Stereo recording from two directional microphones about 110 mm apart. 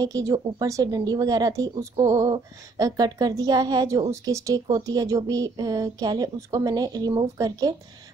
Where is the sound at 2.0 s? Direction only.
30° right (ahead or behind).